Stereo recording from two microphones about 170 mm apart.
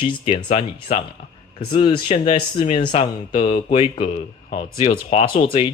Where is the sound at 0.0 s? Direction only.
30° left (ahead or behind).